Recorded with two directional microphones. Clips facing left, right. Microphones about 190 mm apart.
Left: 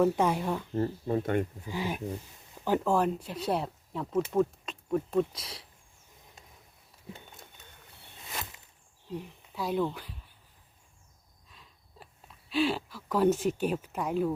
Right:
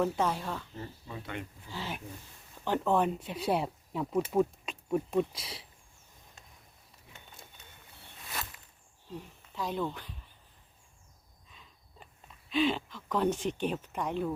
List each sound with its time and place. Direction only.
0.0 s speech: 10° left (ahead or behind)
0.7 s speech: 50° left (ahead or behind)
1.6 s speech: 15° left (ahead or behind)
2.6 s speech: 5° left (ahead or behind)
9.0 s speech: 10° left (ahead or behind)
11.4 s a sound: centre (ahead or behind)